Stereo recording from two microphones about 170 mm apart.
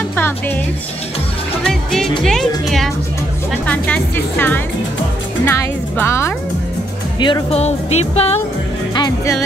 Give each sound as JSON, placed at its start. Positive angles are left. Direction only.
{"t": 1.6, "sound": "speech", "side_deg": 0}
{"t": 7.2, "sound": "music", "side_deg": 25}
{"t": 8.9, "sound": "speech", "side_deg": 25}